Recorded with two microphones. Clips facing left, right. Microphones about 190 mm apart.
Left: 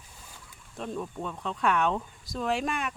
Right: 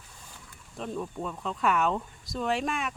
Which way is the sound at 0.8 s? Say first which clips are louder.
Even; centre (ahead or behind).